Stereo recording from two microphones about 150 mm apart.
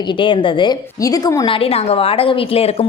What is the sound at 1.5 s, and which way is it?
A woman's voice, 40° left (ahead or behind).